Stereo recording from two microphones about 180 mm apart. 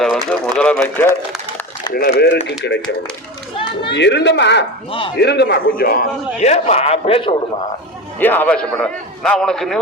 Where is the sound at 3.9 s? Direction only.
75° left (ahead or behind).